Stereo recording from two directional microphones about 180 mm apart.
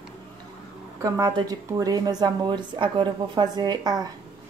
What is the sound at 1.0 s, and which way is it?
Speech, 20° right (ahead or behind).